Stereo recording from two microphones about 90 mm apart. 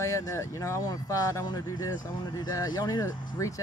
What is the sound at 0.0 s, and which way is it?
Speech, 35° left (ahead or behind).